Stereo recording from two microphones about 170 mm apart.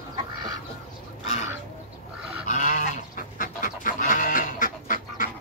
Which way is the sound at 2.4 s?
50° left (ahead or behind).